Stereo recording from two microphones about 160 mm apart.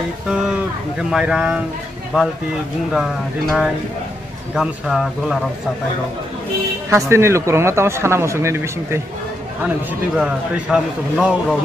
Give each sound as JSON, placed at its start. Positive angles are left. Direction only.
{"t": 0.9, "sound": "speech", "side_deg": -5}
{"t": 2.9, "sound": "a man's voice", "side_deg": -5}
{"t": 6.9, "sound": "speech", "side_deg": -15}
{"t": 10.1, "sound": "a man's voice", "side_deg": -5}